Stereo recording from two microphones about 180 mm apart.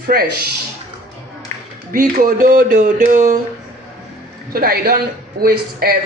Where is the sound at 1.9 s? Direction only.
50° right (ahead or behind).